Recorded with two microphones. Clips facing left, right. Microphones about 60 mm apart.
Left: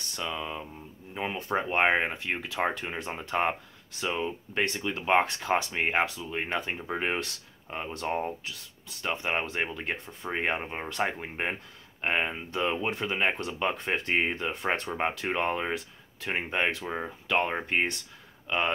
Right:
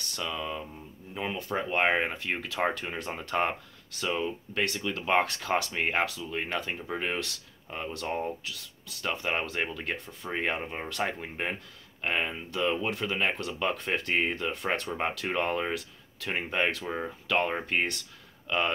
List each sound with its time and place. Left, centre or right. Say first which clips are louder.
0.1 s speech: even; centre
1.9 s speech: left 1 dB; centre